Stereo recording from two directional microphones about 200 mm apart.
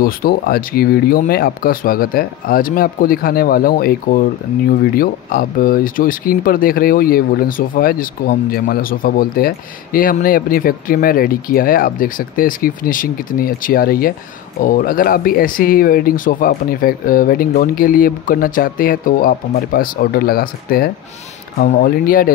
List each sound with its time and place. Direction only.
0.0 s speech: 50° left (ahead or behind)